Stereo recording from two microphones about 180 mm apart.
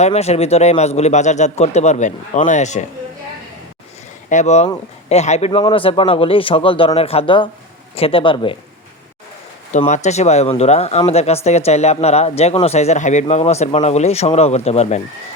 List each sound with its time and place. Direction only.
0.0 s speech: 35° left (ahead or behind)
4.3 s a man's voice: 40° left (ahead or behind)
5.5 s a man's voice: 25° left (ahead or behind)
9.7 s speech: 40° left (ahead or behind)